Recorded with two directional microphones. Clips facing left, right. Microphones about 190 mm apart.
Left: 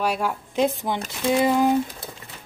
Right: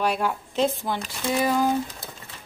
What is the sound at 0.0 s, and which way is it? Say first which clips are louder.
Speech: even; 5° left (ahead or behind).